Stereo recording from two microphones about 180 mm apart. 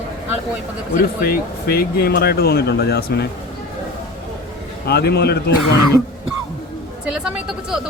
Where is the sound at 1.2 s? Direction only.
55° left (ahead or behind).